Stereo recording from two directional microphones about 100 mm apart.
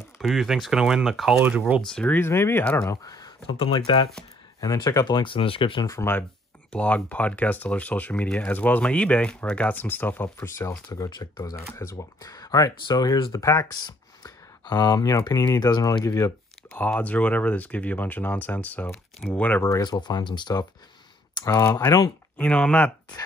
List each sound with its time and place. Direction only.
0.2 s speech: centre (ahead or behind)
2.1 s speech: 25° left (ahead or behind); by 3.3 s 40° left (ahead or behind)
3.4 s speech: 60° left (ahead or behind)
4.6 s speech: 35° left (ahead or behind)
5.0 s speech: 55° left (ahead or behind)
5.9 s speech: 25° left (ahead or behind)
6.7 s speech: 15° left (ahead or behind)
11.1 s speech: 45° left (ahead or behind)
13.8 s speech: 40° left (ahead or behind)
16.1 s speech: 35° left (ahead or behind)
16.7 s speech: 15° left (ahead or behind)
19.8 s speech: 45° left (ahead or behind)
22.4 s speech: 10° left (ahead or behind)